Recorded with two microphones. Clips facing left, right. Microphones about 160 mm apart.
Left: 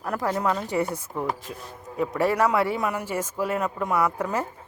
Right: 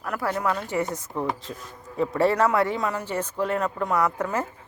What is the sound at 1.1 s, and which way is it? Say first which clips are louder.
Speech: right 1 dB; 20° right (ahead or behind).